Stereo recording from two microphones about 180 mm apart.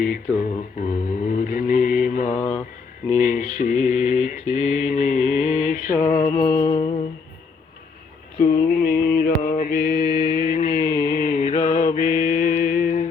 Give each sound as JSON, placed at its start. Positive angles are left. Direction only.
{"t": 0.0, "sound": "mantra", "side_deg": 50}
{"t": 2.4, "sound": "mantra", "side_deg": 10}
{"t": 3.2, "sound": "mantra", "side_deg": 45}
{"t": 6.1, "sound": "music", "side_deg": 15}
{"t": 8.7, "sound": "mantra", "side_deg": 55}